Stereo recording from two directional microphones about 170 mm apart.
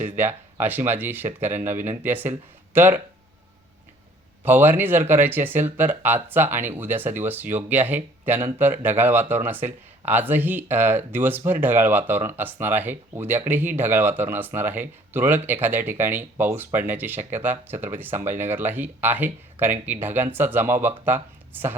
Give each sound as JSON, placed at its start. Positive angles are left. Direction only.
{"t": 0.0, "sound": "speech", "side_deg": -15}
{"t": 4.4, "sound": "speech", "side_deg": -10}